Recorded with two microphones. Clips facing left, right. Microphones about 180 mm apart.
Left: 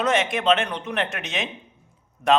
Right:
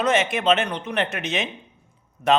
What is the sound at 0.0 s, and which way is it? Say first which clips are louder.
A man's voice: right 1 dB; centre (ahead or behind).